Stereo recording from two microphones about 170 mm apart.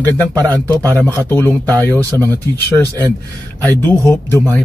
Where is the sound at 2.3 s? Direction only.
15° left (ahead or behind).